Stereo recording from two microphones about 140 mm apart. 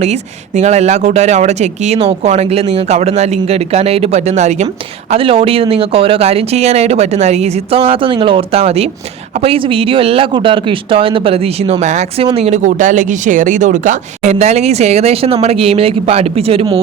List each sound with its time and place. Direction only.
0.0 s speech: 55° right (ahead or behind)
5.1 s speech: 40° right (ahead or behind)